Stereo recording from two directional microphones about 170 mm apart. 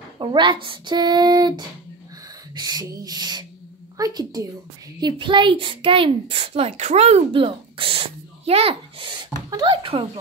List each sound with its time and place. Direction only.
0.2 s speech: 30° right (ahead or behind)
2.5 s a child's voice: 25° right (ahead or behind)